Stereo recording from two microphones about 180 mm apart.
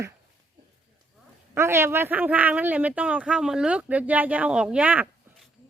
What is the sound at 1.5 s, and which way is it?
Speech, 15° right (ahead or behind).